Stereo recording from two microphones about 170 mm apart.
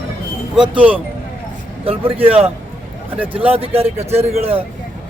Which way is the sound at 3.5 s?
35° right (ahead or behind).